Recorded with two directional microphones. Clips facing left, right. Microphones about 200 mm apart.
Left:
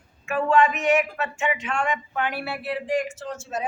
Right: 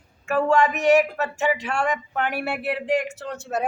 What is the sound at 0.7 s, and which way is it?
Speech, 40° right (ahead or behind).